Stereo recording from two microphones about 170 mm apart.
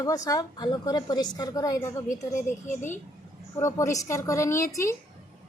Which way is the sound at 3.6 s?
15° left (ahead or behind).